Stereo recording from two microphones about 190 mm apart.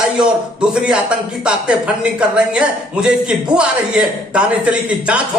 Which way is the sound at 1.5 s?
5° right (ahead or behind).